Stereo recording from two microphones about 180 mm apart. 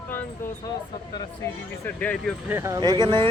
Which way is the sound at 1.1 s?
10° left (ahead or behind).